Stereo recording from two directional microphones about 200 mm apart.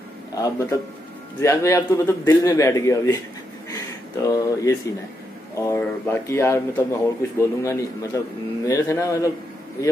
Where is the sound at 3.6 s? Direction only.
15° left (ahead or behind).